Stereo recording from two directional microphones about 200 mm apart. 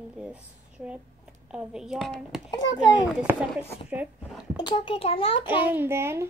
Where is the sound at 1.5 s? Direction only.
5° right (ahead or behind).